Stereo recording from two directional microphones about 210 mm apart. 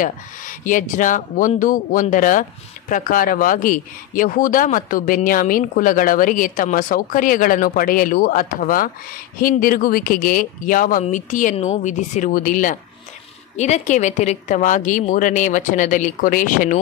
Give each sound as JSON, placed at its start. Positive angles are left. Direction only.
{"t": 0.0, "sound": "speech", "side_deg": 40}